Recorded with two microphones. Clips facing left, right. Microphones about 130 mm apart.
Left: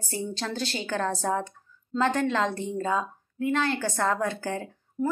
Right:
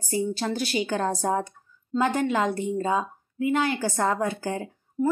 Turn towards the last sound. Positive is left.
turn(degrees=-15)  # may be behind; listen again after turning